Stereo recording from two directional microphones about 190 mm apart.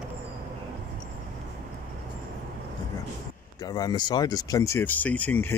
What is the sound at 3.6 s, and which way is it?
Speech, 20° left (ahead or behind).